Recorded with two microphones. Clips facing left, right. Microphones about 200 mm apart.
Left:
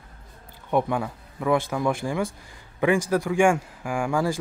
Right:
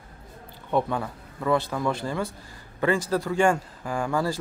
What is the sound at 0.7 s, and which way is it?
A man's voice, 10° left (ahead or behind).